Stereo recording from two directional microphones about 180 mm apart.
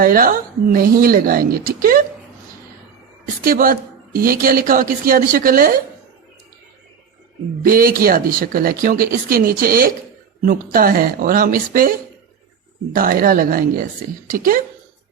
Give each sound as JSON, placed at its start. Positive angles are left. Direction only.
{"t": 0.0, "sound": "speech", "side_deg": -55}
{"t": 3.4, "sound": "speech", "side_deg": -55}
{"t": 7.6, "sound": "speech", "side_deg": -55}